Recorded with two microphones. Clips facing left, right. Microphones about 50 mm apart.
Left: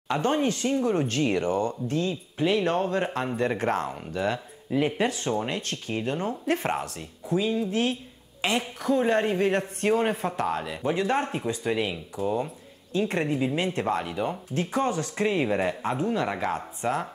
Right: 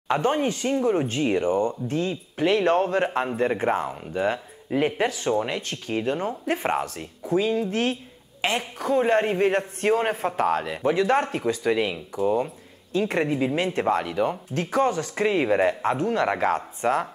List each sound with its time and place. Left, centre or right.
0.1 s speech: right
2.0 s speech: right
3.3 s speech: centre; by 6.1 s right
6.1 s speech: right
6.8 s speech: right
11.9 s speech: right
13.9 s speech: right